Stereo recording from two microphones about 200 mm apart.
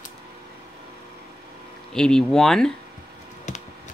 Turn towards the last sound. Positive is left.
turn(degrees=40)  # may be behind; listen again after turning